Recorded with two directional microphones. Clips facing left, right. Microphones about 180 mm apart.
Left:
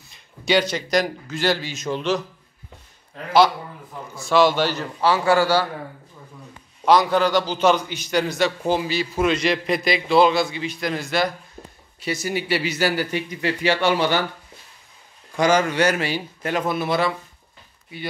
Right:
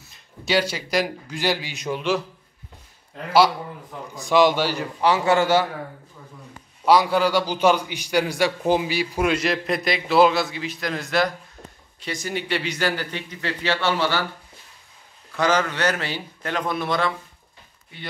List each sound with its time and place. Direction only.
0.5 s a man's voice: 5° right (ahead or behind)
4.1 s a man's voice: 15° right (ahead or behind)
6.9 s a man's voice: 10° right (ahead or behind); by 14.2 s 15° left (ahead or behind)
15.3 s a man's voice: 10° left (ahead or behind)